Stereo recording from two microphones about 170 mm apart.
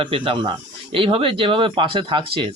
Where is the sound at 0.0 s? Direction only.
30° right (ahead or behind).